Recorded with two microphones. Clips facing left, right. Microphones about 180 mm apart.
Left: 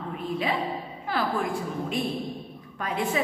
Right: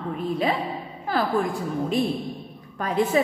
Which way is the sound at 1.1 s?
40° right (ahead or behind).